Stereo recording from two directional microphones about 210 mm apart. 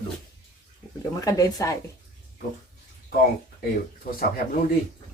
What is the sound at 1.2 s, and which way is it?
Speech, 15° left (ahead or behind).